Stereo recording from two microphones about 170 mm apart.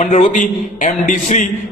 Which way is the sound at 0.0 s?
45° left (ahead or behind).